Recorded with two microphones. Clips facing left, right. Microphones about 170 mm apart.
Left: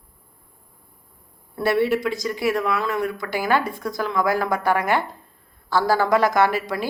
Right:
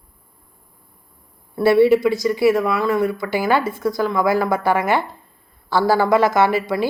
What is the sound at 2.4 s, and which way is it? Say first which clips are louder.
A woman's voice: right 5 dB; 5° right (ahead or behind).